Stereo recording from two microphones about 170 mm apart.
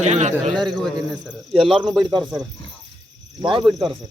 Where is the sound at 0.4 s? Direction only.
25° right (ahead or behind).